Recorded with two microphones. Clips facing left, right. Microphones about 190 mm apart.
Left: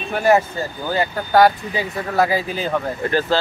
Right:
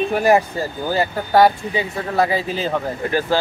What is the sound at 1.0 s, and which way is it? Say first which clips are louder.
Speech: even; centre (ahead or behind).